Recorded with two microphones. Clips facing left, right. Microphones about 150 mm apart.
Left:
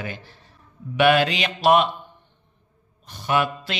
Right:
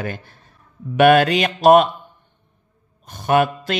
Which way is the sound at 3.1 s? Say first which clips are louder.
Right 6 dB; 50° right (ahead or behind).